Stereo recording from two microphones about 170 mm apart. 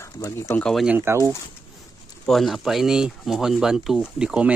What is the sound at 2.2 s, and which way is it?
Speech, centre (ahead or behind).